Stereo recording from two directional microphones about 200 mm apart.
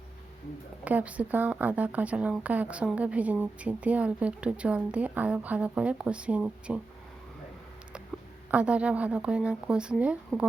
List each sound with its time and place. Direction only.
0.9 s a woman's voice: 5° right (ahead or behind)
8.4 s a woman's voice: 5° right (ahead or behind)